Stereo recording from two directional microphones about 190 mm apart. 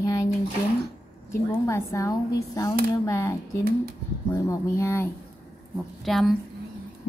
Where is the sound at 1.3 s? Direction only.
15° left (ahead or behind).